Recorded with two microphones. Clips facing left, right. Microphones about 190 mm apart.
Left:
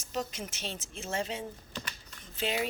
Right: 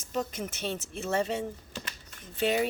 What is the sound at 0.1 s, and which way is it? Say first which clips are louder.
A woman's voice: right 3 dB; 55° right (ahead or behind).